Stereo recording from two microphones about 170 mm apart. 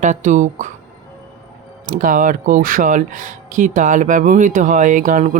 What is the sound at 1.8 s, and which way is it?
Speech, 55° right (ahead or behind).